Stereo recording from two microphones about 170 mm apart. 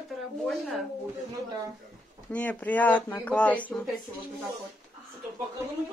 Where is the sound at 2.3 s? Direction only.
10° left (ahead or behind).